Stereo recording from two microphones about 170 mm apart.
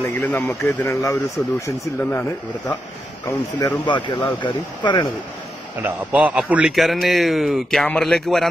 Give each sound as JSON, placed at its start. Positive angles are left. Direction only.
{"t": 0.0, "sound": "speech", "side_deg": 10}
{"t": 3.5, "sound": "speech", "side_deg": 25}
{"t": 5.8, "sound": "a man's voice", "side_deg": -10}